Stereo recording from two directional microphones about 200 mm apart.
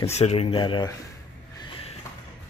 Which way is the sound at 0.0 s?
35° left (ahead or behind).